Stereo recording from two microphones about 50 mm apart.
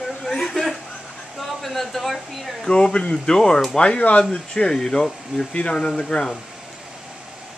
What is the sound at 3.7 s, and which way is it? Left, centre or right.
Speech, left.